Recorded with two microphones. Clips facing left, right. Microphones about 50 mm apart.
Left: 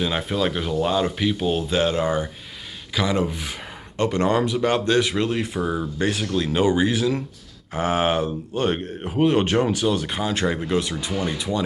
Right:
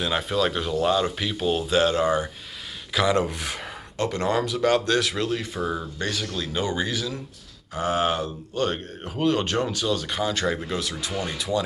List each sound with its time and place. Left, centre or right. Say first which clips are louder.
0.0 s speech: left 1 dB; centre
2.9 s speech: right 1 dB; centre
4.0 s speech: left 4 dB; left; by 10.8 s centre
10.8 s speech: left 4 dB; left